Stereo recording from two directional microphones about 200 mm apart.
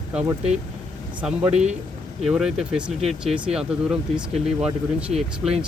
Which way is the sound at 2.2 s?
5° right (ahead or behind).